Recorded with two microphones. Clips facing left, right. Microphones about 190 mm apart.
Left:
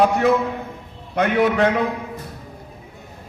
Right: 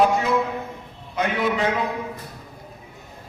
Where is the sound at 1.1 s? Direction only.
60° left (ahead or behind).